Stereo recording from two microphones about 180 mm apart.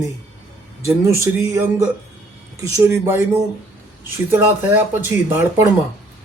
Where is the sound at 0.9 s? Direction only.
15° right (ahead or behind).